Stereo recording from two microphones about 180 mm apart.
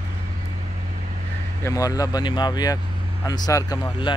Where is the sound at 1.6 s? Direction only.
20° left (ahead or behind).